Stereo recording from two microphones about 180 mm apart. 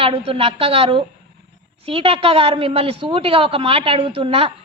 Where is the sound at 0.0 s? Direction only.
35° right (ahead or behind).